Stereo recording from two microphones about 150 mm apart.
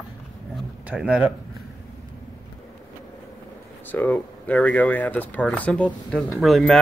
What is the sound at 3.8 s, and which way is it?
Speech, 10° left (ahead or behind).